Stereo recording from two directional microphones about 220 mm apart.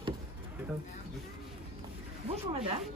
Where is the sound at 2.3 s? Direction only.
25° right (ahead or behind).